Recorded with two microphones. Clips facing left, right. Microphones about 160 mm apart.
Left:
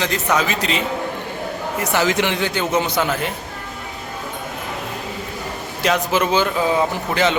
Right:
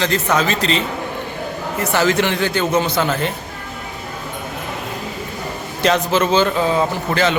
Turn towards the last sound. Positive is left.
turn(degrees=15)  # may be behind; listen again after turning